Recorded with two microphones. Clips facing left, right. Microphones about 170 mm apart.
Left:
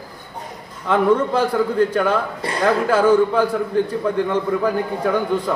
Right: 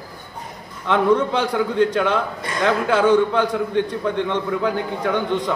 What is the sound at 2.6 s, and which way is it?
A man's voice, 5° left (ahead or behind).